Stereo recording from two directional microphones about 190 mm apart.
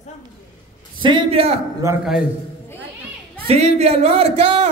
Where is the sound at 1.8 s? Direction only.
15° right (ahead or behind).